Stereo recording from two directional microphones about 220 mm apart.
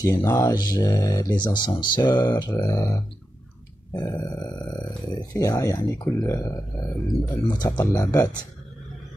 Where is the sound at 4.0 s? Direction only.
15° left (ahead or behind).